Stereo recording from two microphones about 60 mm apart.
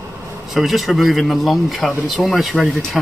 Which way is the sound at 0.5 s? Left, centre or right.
Centre.